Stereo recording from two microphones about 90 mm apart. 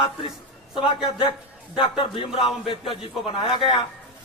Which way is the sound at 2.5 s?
90° left.